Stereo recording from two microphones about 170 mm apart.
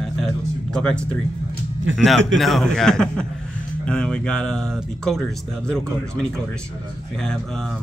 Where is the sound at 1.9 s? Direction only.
90° right.